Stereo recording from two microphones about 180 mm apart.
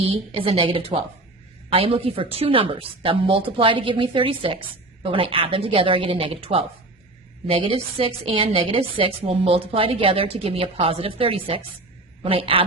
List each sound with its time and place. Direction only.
0.0 s a woman's voice: 30° right (ahead or behind)